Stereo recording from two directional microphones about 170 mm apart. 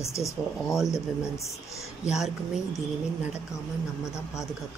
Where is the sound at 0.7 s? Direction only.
Centre (ahead or behind).